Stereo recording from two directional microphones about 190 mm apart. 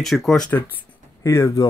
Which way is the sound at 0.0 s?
Centre (ahead or behind).